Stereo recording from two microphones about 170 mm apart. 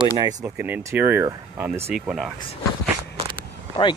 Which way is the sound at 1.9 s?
Centre (ahead or behind).